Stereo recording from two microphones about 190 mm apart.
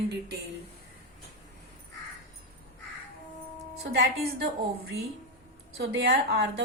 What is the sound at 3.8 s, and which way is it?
A woman's voice, 60° right (ahead or behind).